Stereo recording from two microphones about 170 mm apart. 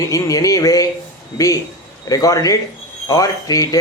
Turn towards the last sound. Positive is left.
turn(degrees=20)  # may be behind; listen again after turning